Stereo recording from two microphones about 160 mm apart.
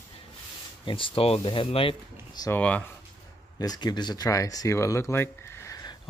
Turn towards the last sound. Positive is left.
turn(degrees=15)  # may be behind; listen again after turning